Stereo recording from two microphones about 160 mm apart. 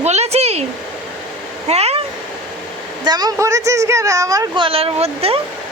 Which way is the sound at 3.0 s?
25° right (ahead or behind).